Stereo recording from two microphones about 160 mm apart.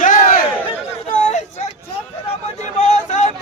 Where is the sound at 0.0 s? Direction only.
55° left (ahead or behind).